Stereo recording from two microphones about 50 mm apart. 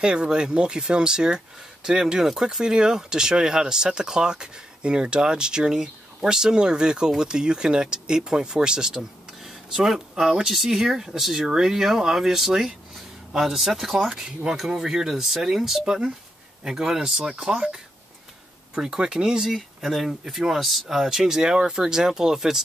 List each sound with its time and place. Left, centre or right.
0.0 s speech: centre
18.8 s speech: centre
19.5 s speech: centre